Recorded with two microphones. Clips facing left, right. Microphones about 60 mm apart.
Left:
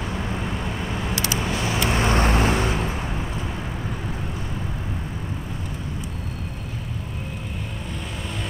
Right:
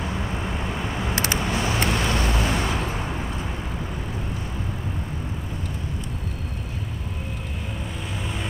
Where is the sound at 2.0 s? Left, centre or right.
Left.